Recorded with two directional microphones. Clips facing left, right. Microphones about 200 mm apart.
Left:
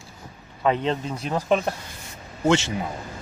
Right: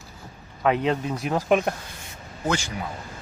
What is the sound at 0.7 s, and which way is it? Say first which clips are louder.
Speech: right 1 dB; 5° right (ahead or behind).